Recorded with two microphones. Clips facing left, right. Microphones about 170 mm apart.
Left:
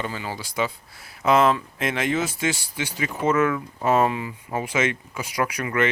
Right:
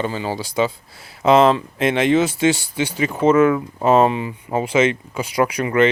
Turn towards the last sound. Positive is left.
turn(degrees=-30)  # may be behind; listen again after turning